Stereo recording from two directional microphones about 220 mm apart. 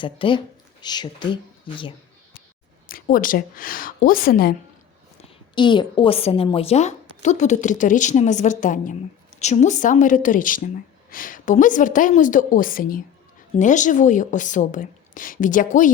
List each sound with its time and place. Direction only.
0.0 s speech: 20° left (ahead or behind)
2.9 s a woman's voice: 40° left (ahead or behind)
5.5 s a woman's voice: 20° left (ahead or behind); by 15.9 s 35° left (ahead or behind)